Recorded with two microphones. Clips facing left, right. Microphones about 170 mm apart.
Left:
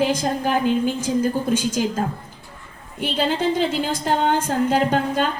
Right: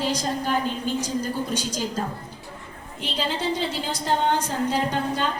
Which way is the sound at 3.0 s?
50° left (ahead or behind).